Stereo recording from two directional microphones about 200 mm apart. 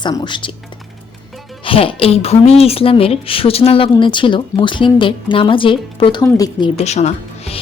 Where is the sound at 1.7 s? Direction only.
30° left (ahead or behind).